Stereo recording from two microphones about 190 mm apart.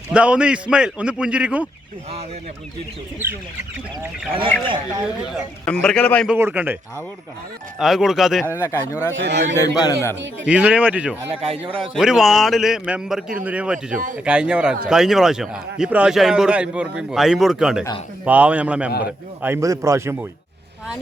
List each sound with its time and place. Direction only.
0.1 s speech: 5° right (ahead or behind)
4.3 s speech: 30° right (ahead or behind)
5.6 s speech: 5° left (ahead or behind)
6.2 s speech: 10° right (ahead or behind)
7.8 s speech: centre (ahead or behind)
8.6 s a man's voice: 15° left (ahead or behind)
9.1 s a man's voice: 65° right (ahead or behind)
9.6 s a man's voice: 20° left (ahead or behind)
10.4 s speech: 5° right (ahead or behind)
11.3 s speech: 30° right (ahead or behind)
11.9 s speech: centre (ahead or behind)
18.9 s a man's voice: 55° left (ahead or behind)
19.4 s speech: 15° right (ahead or behind)